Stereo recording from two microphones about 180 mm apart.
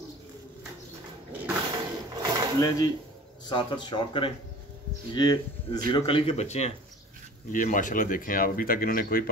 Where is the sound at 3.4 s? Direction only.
25° left (ahead or behind).